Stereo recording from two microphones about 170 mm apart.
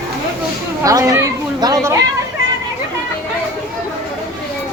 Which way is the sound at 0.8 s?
20° right (ahead or behind).